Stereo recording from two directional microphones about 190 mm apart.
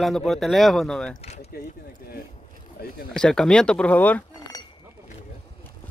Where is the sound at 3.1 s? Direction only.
5° left (ahead or behind).